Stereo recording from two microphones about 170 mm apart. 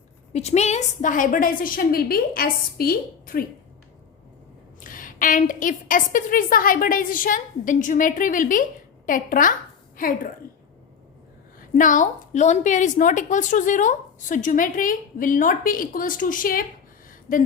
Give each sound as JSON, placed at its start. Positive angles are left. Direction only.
{"t": 0.3, "sound": "a woman's voice", "side_deg": 40}
{"t": 4.8, "sound": "a woman's voice", "side_deg": 55}
{"t": 11.7, "sound": "a woman's voice", "side_deg": 50}
{"t": 17.1, "sound": "a sound", "side_deg": 55}